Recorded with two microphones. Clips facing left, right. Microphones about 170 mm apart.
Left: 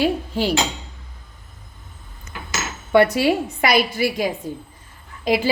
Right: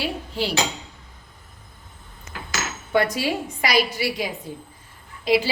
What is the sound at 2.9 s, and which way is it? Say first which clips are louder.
A woman's voice: left 6 dB; 65° left (ahead or behind).